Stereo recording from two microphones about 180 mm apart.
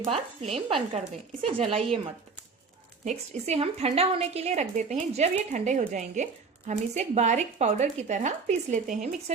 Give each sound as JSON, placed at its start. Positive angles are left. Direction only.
{"t": 0.1, "sound": "speech", "side_deg": -35}
{"t": 3.0, "sound": "speech", "side_deg": -40}